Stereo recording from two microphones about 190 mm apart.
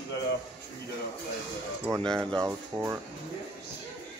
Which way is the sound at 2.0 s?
5° left (ahead or behind).